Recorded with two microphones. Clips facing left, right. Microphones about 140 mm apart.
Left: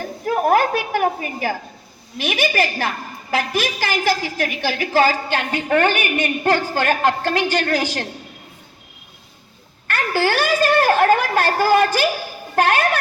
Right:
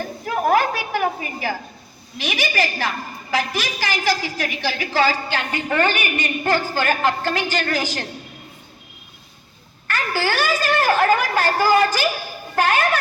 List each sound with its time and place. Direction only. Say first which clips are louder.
0.3 s a sound: left 2 dB; 50° left (ahead or behind)
2.1 s a woman's voice: left 3 dB; 55° left (ahead or behind)
9.8 s a woman's voice: left 3 dB; 60° left (ahead or behind)